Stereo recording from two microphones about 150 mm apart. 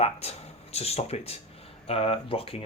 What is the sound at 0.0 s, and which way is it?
Speech, 45° left (ahead or behind).